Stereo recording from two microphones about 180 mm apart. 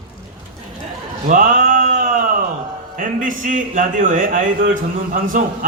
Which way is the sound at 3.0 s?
45° right (ahead or behind).